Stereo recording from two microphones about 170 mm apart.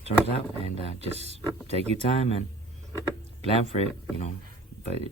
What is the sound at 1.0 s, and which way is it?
Speech, 40° right (ahead or behind).